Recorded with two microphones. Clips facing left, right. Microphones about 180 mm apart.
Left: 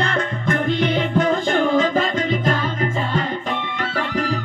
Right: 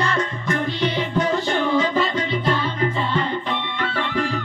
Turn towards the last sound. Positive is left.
turn(degrees=45)  # may be behind; listen again after turning